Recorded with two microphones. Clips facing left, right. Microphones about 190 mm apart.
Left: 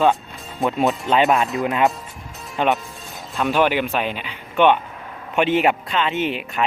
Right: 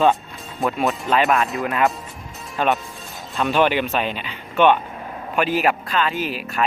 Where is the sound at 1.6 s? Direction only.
20° left (ahead or behind).